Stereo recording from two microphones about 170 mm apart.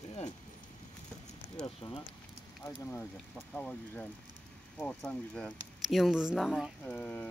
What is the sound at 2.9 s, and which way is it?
Speech, 10° left (ahead or behind).